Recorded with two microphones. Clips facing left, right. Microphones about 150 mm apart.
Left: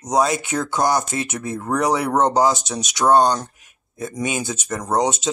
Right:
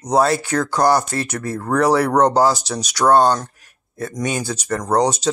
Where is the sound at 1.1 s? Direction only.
20° left (ahead or behind).